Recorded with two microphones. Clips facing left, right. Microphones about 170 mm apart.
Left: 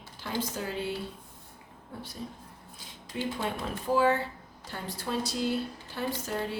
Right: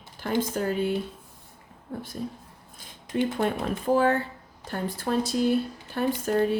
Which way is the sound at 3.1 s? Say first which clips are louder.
Right 7 dB; 55° right (ahead or behind).